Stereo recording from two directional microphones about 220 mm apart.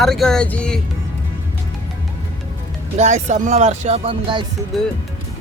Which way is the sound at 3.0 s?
30° right (ahead or behind).